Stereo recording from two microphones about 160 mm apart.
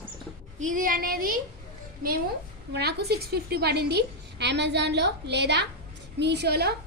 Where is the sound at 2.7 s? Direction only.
90° right.